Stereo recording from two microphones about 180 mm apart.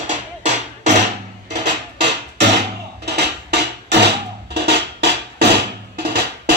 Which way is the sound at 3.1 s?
65° right (ahead or behind).